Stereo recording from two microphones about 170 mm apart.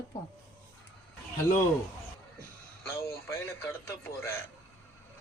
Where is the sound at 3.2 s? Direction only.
15° left (ahead or behind).